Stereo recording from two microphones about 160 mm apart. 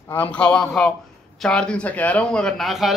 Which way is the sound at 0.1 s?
10° left (ahead or behind).